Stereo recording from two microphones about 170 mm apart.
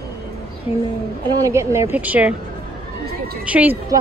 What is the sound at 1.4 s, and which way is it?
Speech, 15° right (ahead or behind).